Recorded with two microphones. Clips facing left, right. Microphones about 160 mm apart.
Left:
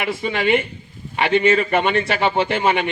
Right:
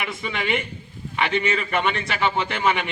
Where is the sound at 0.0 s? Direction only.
35° left (ahead or behind).